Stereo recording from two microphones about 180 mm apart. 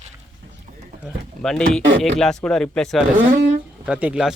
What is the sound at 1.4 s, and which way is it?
Speech, 5° left (ahead or behind).